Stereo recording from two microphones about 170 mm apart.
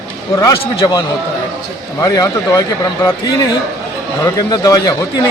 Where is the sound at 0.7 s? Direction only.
25° left (ahead or behind).